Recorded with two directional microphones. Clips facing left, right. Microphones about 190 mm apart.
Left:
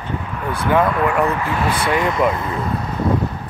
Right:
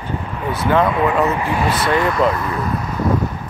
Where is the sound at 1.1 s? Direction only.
20° right (ahead or behind).